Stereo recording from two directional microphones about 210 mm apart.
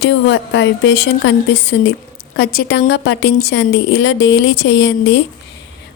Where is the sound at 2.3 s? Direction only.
45° left (ahead or behind).